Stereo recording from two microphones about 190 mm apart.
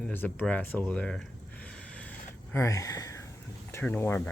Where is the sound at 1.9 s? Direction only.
10° left (ahead or behind).